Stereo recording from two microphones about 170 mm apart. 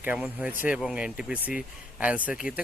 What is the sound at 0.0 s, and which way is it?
Speech, 10° right (ahead or behind).